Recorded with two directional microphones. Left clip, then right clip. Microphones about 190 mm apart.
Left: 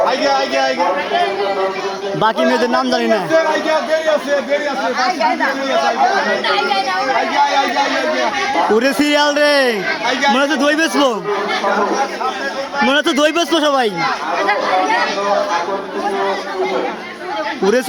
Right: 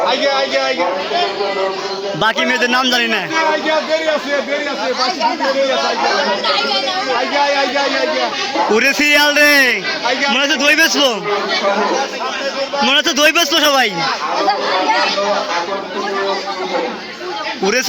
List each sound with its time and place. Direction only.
2.5 s a man's voice: 10° left (ahead or behind)
8.7 s a man's voice: 20° left (ahead or behind)
12.9 s a man's voice: 25° left (ahead or behind)